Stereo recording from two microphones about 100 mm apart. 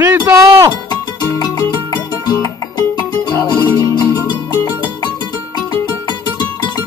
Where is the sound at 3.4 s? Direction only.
45° left (ahead or behind).